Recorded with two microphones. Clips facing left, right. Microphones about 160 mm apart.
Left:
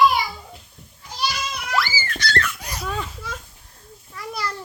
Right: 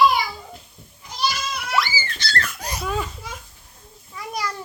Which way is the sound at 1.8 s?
15° right (ahead or behind).